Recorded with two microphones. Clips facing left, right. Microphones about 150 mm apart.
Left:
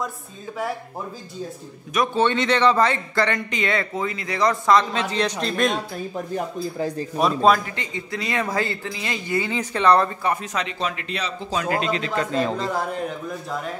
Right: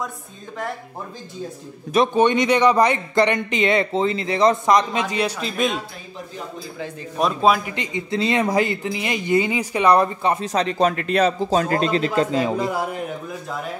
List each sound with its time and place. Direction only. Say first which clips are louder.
2.1 s speech: right 1 dB; 15° right (ahead or behind)
5.1 s speech: even; 5° right (ahead or behind)
7.2 s speech: even; centre (ahead or behind)
7.7 s speech: right 5 dB; 20° right (ahead or behind); by 12.3 s 35° right (ahead or behind)
12.3 s speech: right 2 dB; 15° right (ahead or behind)